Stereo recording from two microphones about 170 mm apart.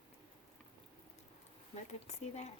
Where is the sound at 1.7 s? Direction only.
40° left (ahead or behind).